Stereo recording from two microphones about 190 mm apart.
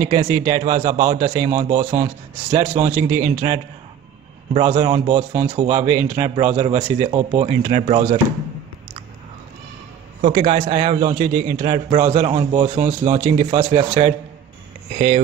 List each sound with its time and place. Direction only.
0.1 s a man's voice: 40° right (ahead or behind)
4.8 s a man's voice: 30° right (ahead or behind)
10.2 s a man's voice: 40° right (ahead or behind)
11.9 s a man's voice: 35° right (ahead or behind)